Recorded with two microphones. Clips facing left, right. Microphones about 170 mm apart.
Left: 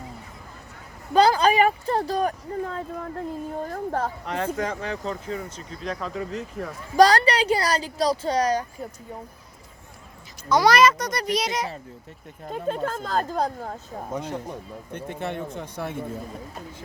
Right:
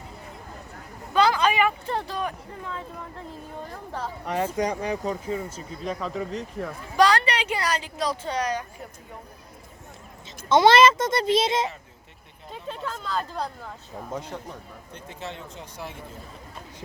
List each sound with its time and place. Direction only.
1.1 s speech: 40° left (ahead or behind)
4.3 s speech: 10° right (ahead or behind)
6.9 s speech: 40° left (ahead or behind)
10.5 s a child's voice: 25° right (ahead or behind)
12.5 s speech: 50° left (ahead or behind)
14.9 s speech: 55° left (ahead or behind)